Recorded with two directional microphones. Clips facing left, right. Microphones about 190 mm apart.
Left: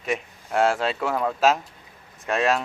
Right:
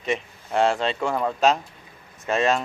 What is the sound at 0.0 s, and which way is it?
Speech, centre (ahead or behind).